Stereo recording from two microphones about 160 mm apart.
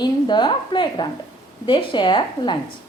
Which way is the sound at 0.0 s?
30° left (ahead or behind).